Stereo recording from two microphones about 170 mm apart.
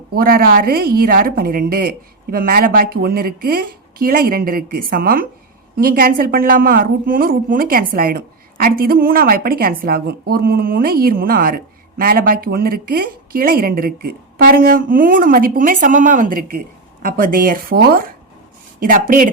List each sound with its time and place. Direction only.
0.1 s a woman's voice: 60° right (ahead or behind)